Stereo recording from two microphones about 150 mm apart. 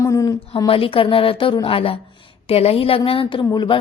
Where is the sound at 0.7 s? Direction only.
35° left (ahead or behind).